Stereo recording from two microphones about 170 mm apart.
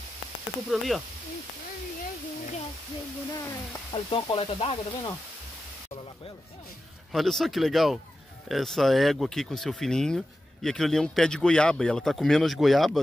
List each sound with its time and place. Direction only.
0.7 s speech: centre (ahead or behind)
3.9 s speech: 30° left (ahead or behind)
7.1 s speech: centre (ahead or behind)